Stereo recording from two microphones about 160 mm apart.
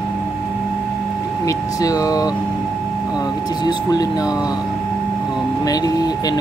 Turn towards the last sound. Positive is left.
turn(degrees=25)  # may be behind; listen again after turning